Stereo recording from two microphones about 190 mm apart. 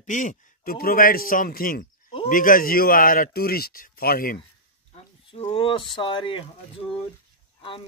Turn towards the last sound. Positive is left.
turn(degrees=25)  # may be behind; listen again after turning